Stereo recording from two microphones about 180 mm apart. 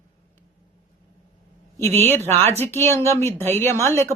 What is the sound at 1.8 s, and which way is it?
A woman's voice, 10° left (ahead or behind).